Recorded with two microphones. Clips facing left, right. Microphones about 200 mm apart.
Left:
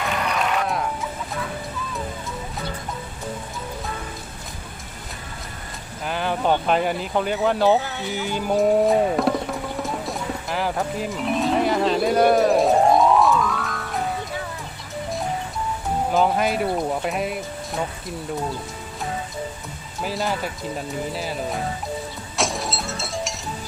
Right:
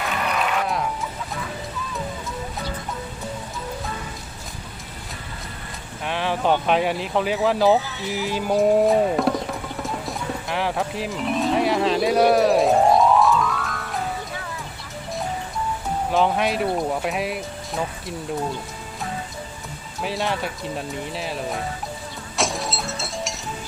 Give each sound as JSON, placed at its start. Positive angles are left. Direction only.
{"t": 6.1, "sound": "speech", "side_deg": 0}
{"t": 7.8, "sound": "speech", "side_deg": 60}
{"t": 8.1, "sound": "music", "side_deg": 0}
{"t": 16.1, "sound": "speech", "side_deg": 0}
{"t": 20.0, "sound": "speech", "side_deg": 0}
{"t": 22.4, "sound": "vehicle", "side_deg": 0}